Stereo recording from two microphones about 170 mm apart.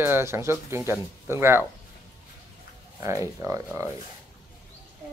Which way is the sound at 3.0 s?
15° right (ahead or behind).